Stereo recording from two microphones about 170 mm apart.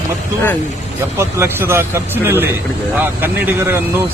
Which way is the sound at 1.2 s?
15° right (ahead or behind).